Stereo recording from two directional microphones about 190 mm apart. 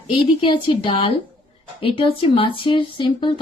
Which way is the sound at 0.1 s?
25° left (ahead or behind).